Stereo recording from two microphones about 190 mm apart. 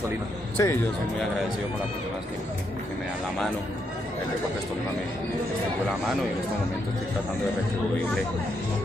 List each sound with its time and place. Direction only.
0.6 s speech: 15° left (ahead or behind)